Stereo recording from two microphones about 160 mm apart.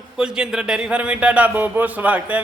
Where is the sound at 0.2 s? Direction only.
5° right (ahead or behind).